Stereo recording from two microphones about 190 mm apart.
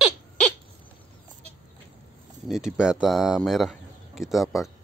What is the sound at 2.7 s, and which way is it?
Speech, 5° right (ahead or behind).